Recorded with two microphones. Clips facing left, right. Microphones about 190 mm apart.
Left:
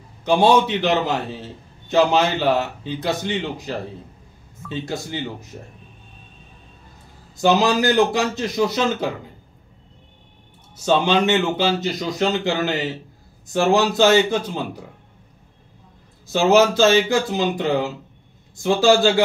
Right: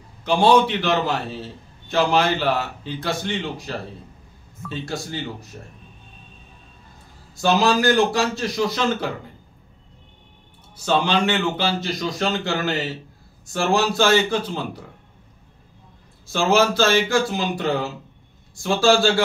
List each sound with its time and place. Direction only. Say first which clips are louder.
0.2 s a man's voice: left 1 dB; 15° left (ahead or behind)
7.3 s a man's voice: left 1 dB; 20° left (ahead or behind)
10.9 s a man's voice: left 3 dB; 20° left (ahead or behind)
16.3 s speech: left 3 dB; 20° left (ahead or behind)